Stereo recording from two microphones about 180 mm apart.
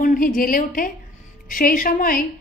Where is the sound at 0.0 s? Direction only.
50° left (ahead or behind).